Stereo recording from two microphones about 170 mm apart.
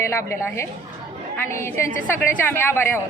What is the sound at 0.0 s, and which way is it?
A woman's voice, 15° left (ahead or behind).